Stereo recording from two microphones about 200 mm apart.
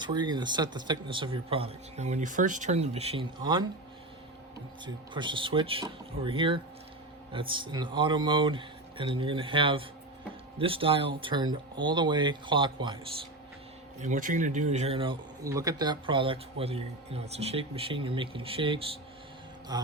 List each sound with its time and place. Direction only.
0.0 s speech: 20° right (ahead or behind)
5.1 s speech: 25° right (ahead or behind)
14.0 s speech: 40° right (ahead or behind); by 19.9 s 20° right (ahead or behind)